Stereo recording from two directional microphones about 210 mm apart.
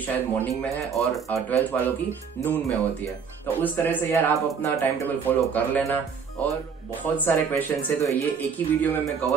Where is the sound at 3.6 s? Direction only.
10° left (ahead or behind).